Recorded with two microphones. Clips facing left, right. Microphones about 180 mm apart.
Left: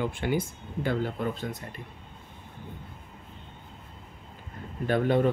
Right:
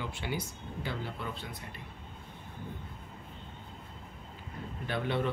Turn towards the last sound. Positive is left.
turn(degrees=45)  # may be behind; listen again after turning